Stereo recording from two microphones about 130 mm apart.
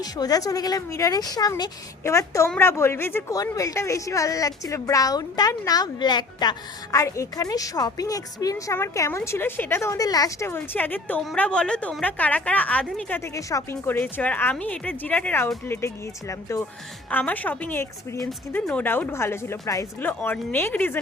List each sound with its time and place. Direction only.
0.0 s a woman's voice: 30° left (ahead or behind)